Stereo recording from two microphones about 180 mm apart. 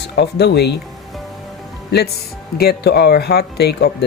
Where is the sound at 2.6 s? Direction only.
60° left (ahead or behind).